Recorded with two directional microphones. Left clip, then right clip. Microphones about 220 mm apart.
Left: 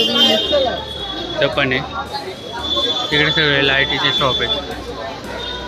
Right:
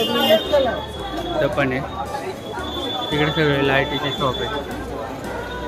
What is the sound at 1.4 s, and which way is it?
Speech, centre (ahead or behind).